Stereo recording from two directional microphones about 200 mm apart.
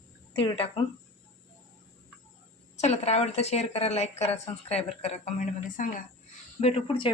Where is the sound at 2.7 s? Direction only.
35° left (ahead or behind).